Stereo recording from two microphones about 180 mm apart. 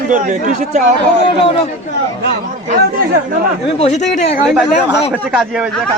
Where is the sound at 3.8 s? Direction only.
40° left (ahead or behind).